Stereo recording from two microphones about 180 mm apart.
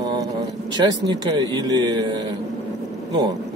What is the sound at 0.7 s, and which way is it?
Speech, 25° right (ahead or behind).